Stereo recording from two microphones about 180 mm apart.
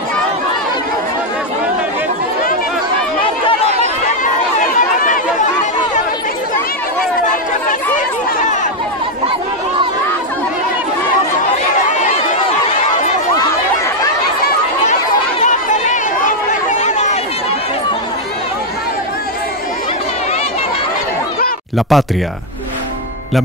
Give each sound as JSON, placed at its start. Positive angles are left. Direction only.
{"t": 4.2, "sound": "chatter", "side_deg": 45}
{"t": 11.9, "sound": "chatter", "side_deg": 45}
{"t": 15.4, "sound": "chatter", "side_deg": 45}
{"t": 21.7, "sound": "speech", "side_deg": 0}